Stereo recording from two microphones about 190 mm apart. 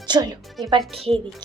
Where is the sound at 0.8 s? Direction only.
Centre (ahead or behind).